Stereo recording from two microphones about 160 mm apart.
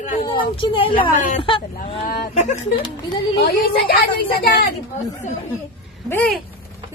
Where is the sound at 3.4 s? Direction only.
70° left (ahead or behind).